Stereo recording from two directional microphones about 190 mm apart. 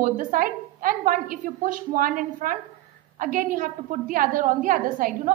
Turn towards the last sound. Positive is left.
turn(degrees=-45)  # may be behind; listen again after turning